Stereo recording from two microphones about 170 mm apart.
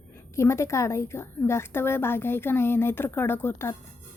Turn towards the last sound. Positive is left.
turn(degrees=15)  # may be behind; listen again after turning